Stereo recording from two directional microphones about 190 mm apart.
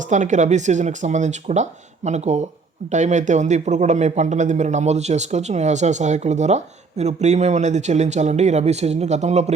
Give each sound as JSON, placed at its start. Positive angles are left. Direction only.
{"t": 0.1, "sound": "a man's voice", "side_deg": -40}